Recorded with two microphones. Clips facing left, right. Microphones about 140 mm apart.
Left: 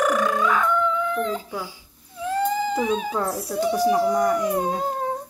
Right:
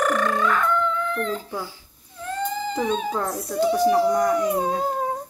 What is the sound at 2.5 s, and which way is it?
Speech, 5° left (ahead or behind).